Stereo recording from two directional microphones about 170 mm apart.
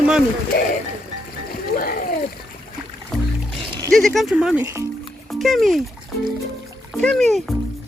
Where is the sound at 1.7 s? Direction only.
60° left (ahead or behind).